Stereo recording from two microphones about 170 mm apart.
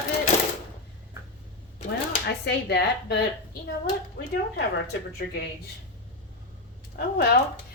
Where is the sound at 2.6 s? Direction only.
80° left.